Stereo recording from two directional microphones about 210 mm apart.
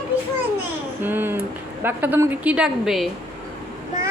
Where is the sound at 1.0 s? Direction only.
10° right (ahead or behind).